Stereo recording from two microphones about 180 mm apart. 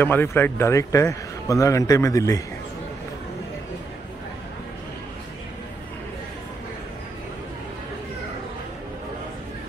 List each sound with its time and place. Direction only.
0.0 s a man's voice: 10° left (ahead or behind)